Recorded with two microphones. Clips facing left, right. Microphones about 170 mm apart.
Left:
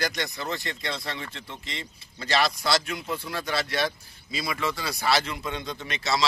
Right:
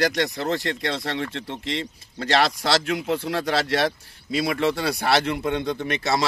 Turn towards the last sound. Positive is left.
turn(degrees=-55)  # may be behind; listen again after turning